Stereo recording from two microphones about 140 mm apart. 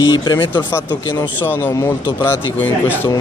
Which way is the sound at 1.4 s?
15° left (ahead or behind).